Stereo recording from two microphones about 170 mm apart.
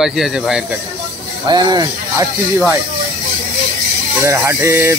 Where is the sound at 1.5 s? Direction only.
25° right (ahead or behind).